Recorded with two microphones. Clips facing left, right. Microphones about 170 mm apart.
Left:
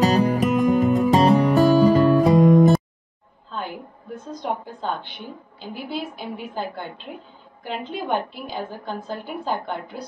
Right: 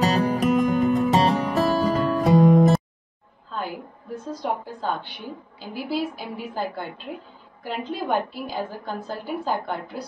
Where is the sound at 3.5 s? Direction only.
5° right (ahead or behind).